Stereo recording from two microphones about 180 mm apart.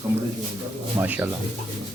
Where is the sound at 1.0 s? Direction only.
10° right (ahead or behind).